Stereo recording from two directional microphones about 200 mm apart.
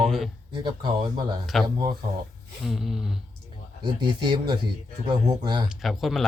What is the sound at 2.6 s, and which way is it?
Music, centre (ahead or behind).